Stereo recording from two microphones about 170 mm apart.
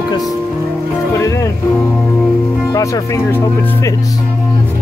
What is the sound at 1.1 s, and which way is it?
Music, 20° left (ahead or behind).